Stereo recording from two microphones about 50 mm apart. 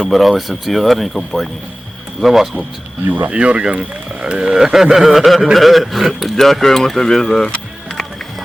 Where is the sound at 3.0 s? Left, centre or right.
Right.